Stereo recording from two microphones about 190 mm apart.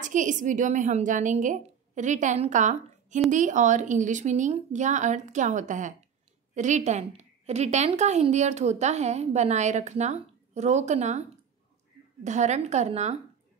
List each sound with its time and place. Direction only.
0.0 s a woman's voice: 40° right (ahead or behind)